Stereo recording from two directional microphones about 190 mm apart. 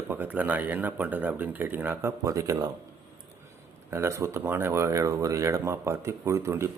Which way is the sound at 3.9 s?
15° right (ahead or behind).